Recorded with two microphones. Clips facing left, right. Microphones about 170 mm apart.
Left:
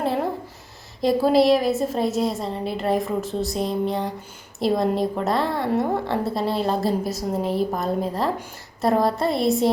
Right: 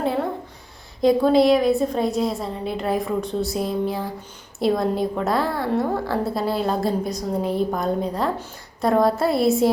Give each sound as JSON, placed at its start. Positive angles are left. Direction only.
{"t": 1.0, "sound": "a woman's voice", "side_deg": 0}